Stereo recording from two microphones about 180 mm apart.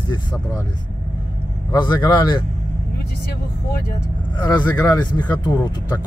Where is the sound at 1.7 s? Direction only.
25° left (ahead or behind).